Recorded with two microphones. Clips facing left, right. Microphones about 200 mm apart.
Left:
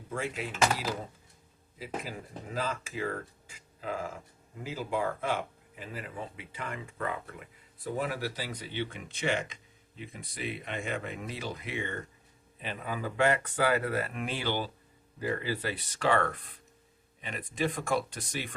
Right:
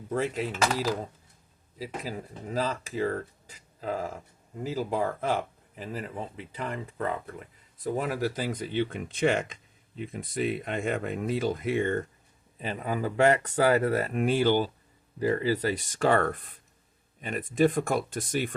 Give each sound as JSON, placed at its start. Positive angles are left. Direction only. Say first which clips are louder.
{"t": 0.1, "sound": "speech", "louder": "right 6 dB", "side_deg": -40}
{"t": 10.7, "sound": "speech", "louder": "right 6 dB", "side_deg": -50}